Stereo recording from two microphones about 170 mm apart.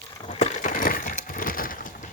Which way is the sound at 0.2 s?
30° left (ahead or behind).